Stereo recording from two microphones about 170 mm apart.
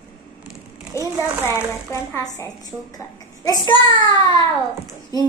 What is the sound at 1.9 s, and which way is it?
A woman's voice, 15° left (ahead or behind).